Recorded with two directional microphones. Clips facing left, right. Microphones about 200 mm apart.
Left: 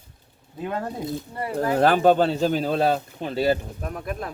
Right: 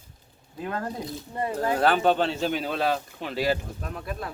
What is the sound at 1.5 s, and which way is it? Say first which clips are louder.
Speech: left 4 dB; 40° left (ahead or behind).